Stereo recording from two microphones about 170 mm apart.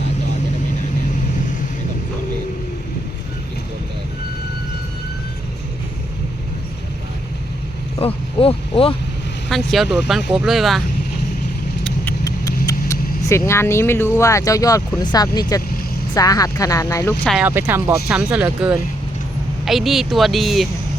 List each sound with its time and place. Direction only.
7.9 s speech: 35° left (ahead or behind)
9.5 s speech: centre (ahead or behind)
11.8 s vehicle: 5° left (ahead or behind)
12.6 s speech: 20° left (ahead or behind)
17.4 s speech: 10° right (ahead or behind)